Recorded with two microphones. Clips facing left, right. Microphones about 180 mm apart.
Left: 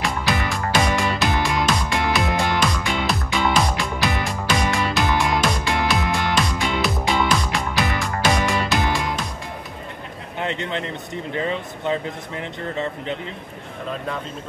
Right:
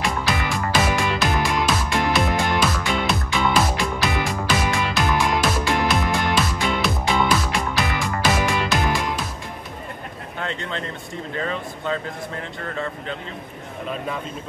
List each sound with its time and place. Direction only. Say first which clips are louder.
0.0 s music: even; centre (ahead or behind)
10.4 s a sound: left 3 dB; 20° left (ahead or behind)
11.3 s speech: left 2 dB; 20° left (ahead or behind)